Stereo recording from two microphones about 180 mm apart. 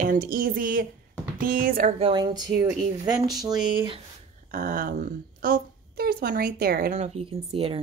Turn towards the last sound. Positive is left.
turn(degrees=-30)  # may be behind; listen again after turning